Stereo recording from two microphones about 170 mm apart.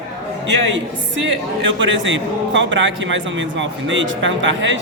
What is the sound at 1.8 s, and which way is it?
Speech, 90° right.